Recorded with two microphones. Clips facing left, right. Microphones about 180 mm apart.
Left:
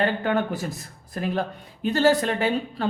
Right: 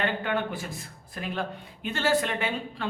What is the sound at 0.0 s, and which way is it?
A woman's voice, 40° left (ahead or behind).